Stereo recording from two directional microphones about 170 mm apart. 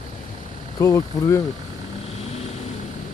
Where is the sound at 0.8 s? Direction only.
15° left (ahead or behind).